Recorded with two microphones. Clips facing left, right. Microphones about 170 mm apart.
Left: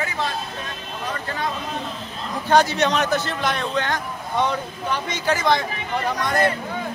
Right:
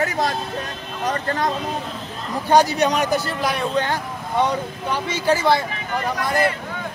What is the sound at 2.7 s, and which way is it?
Speech, 10° right (ahead or behind).